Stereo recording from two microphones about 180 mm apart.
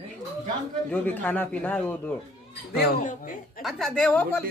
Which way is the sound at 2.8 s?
55° left (ahead or behind).